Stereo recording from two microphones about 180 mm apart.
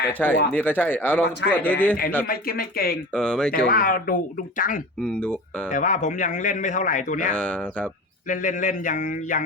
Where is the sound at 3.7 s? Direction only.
50° left (ahead or behind).